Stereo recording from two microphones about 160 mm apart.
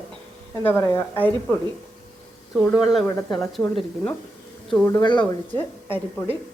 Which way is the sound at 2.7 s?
Centre (ahead or behind).